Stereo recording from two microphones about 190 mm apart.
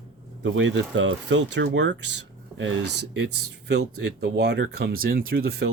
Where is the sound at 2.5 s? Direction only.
90° right.